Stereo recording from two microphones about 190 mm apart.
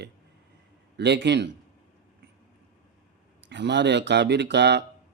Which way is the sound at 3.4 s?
65° right (ahead or behind).